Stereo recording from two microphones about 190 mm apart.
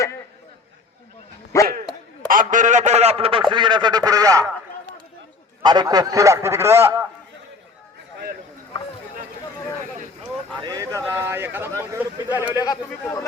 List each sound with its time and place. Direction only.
1.5 s speech: 15° left (ahead or behind)
2.2 s a man's voice: 45° right (ahead or behind); by 4.4 s 20° right (ahead or behind)
5.6 s a man's voice: 20° right (ahead or behind)
10.6 s a man's voice: 20° right (ahead or behind)